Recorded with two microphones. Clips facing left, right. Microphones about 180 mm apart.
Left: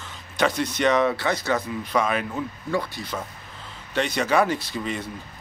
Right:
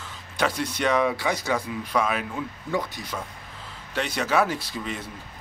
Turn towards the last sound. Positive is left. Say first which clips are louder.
# left 3 dB
turn(degrees=-5)  # may be behind; listen again after turning